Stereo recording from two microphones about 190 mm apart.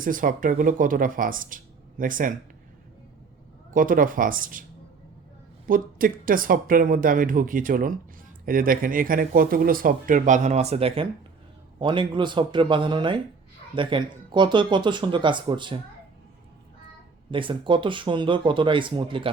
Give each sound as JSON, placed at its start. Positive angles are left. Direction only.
{"t": 0.0, "sound": "speech", "side_deg": -45}
{"t": 3.7, "sound": "speech", "side_deg": -45}
{"t": 5.6, "sound": "speech", "side_deg": -45}
{"t": 17.3, "sound": "speech", "side_deg": -25}